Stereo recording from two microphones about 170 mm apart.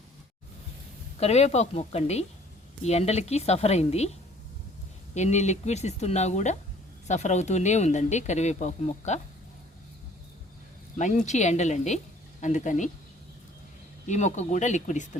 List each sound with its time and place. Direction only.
1.2 s speech: 40° left (ahead or behind)
5.1 s speech: 40° left (ahead or behind)
10.9 s speech: 45° left (ahead or behind)
14.1 s speech: 45° left (ahead or behind)